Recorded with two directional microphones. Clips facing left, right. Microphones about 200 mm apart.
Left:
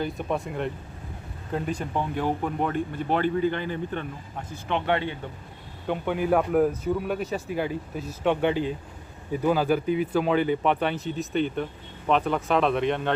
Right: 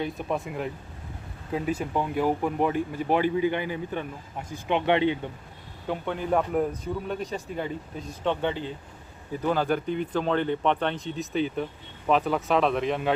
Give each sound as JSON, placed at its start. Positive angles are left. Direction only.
{"t": 0.0, "sound": "speech", "side_deg": 0}
{"t": 5.9, "sound": "a man's voice", "side_deg": 10}